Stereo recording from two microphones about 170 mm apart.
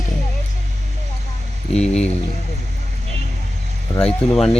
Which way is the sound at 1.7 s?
40° left (ahead or behind).